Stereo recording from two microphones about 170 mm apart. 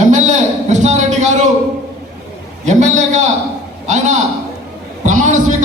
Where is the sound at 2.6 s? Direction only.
45° right (ahead or behind).